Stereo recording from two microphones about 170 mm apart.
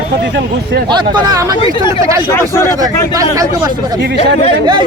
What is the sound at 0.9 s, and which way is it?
Speech, 25° right (ahead or behind).